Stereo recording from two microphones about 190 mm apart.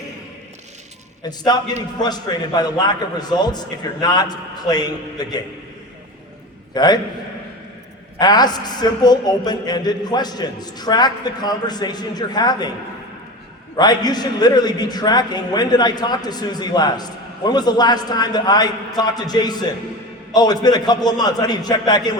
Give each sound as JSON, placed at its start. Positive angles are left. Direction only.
{"t": 1.2, "sound": "a man's voice", "side_deg": 20}
{"t": 6.7, "sound": "a man's voice", "side_deg": 20}
{"t": 8.2, "sound": "a man's voice", "side_deg": 20}
{"t": 13.7, "sound": "a man's voice", "side_deg": 20}